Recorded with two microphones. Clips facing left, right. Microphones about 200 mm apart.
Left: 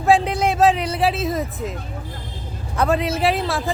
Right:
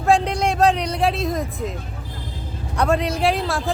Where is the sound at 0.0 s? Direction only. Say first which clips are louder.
Left 1 dB; 5° left (ahead or behind).